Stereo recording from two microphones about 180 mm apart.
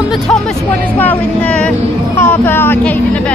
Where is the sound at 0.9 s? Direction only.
10° left (ahead or behind).